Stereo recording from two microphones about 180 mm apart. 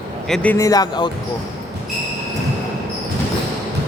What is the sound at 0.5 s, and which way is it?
Speech, 20° left (ahead or behind).